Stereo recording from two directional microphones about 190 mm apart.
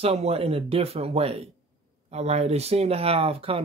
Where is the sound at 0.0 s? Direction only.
30° right (ahead or behind).